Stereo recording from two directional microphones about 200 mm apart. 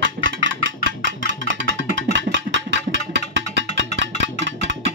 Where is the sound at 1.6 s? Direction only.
65° right (ahead or behind).